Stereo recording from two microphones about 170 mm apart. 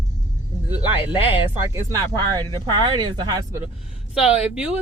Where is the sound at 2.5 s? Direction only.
25° right (ahead or behind).